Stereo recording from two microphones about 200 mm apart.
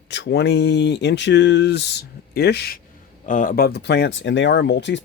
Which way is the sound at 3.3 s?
40° left (ahead or behind).